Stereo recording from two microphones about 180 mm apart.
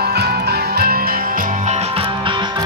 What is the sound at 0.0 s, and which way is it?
Music, 65° right (ahead or behind).